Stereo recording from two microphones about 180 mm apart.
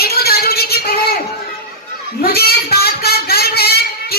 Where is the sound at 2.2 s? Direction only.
60° left (ahead or behind).